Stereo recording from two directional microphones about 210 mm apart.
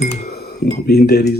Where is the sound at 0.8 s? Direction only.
50° left (ahead or behind).